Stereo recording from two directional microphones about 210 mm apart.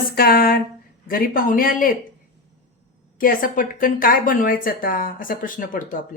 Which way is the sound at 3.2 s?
40° left (ahead or behind).